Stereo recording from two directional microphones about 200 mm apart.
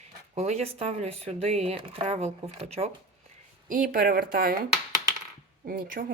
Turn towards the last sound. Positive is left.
turn(degrees=-45)  # may be behind; listen again after turning